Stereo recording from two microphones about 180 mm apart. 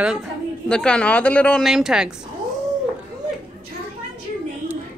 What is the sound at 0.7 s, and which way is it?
Speech, 5° left (ahead or behind).